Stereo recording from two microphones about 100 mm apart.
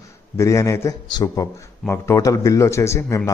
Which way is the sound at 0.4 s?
30° left (ahead or behind).